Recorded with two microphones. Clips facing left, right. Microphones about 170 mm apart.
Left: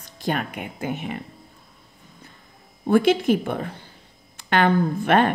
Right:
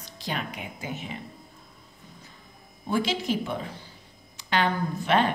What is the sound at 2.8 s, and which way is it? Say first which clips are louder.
A woman's voice: left 9 dB; 55° left (ahead or behind).